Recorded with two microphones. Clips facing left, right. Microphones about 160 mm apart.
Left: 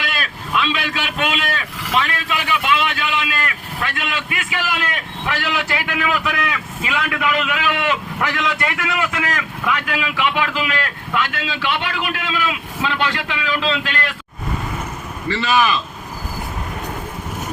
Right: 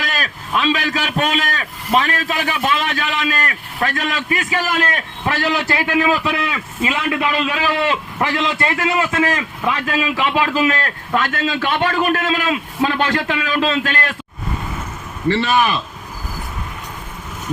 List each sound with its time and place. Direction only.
0.0 s a man's voice: 40° right (ahead or behind)
15.4 s speech: 55° right (ahead or behind)